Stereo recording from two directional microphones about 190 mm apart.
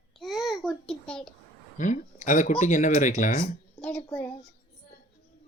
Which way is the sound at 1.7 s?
40° left (ahead or behind).